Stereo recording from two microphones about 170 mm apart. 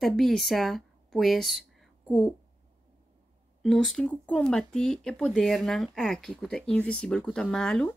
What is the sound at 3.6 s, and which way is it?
Speech, centre (ahead or behind).